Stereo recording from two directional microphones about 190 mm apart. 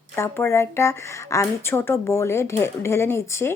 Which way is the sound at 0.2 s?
15° left (ahead or behind).